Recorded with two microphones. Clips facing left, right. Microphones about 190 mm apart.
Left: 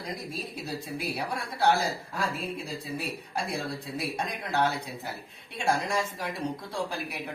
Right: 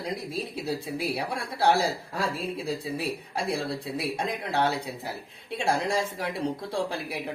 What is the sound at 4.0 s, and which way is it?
Speech, 30° right (ahead or behind).